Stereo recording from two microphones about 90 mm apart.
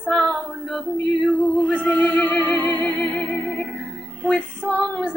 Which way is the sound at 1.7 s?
20° left (ahead or behind).